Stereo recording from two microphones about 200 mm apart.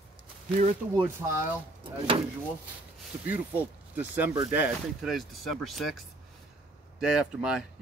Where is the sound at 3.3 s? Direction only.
10° right (ahead or behind).